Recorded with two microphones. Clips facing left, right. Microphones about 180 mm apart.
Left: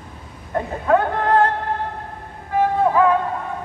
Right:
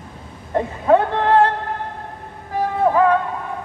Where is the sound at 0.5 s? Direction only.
30° right (ahead or behind).